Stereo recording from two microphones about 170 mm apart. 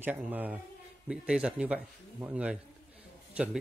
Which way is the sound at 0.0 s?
10° right (ahead or behind).